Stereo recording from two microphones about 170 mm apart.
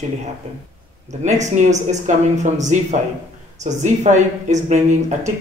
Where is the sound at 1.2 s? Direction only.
45° right (ahead or behind).